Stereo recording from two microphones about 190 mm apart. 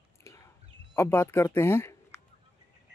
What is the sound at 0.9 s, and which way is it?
A man's voice, 10° left (ahead or behind).